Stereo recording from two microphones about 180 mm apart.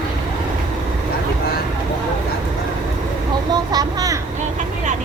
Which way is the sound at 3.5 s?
20° right (ahead or behind).